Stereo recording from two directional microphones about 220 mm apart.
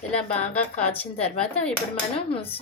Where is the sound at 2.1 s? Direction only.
25° left (ahead or behind).